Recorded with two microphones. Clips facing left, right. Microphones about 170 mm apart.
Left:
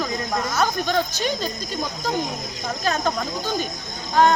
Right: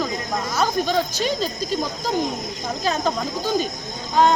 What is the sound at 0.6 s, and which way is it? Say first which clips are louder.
Speech: right 2 dB; 5° right (ahead or behind).